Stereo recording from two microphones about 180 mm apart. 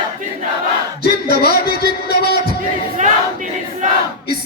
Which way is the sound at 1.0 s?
60° left (ahead or behind).